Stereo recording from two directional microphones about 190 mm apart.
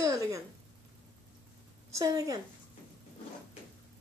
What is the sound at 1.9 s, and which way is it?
Speech, 15° right (ahead or behind).